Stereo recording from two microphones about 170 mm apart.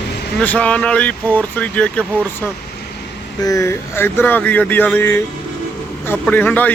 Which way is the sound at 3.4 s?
20° left (ahead or behind).